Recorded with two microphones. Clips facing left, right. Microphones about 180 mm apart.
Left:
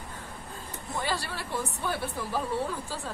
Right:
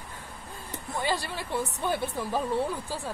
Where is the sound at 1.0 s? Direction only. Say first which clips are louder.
Right 3 dB; 15° right (ahead or behind).